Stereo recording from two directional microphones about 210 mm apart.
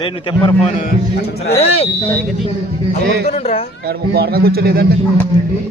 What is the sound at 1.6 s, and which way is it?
Speech, 30° left (ahead or behind).